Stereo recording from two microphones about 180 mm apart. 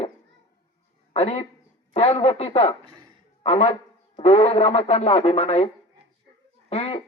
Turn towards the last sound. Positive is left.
turn(degrees=35)  # may be behind; listen again after turning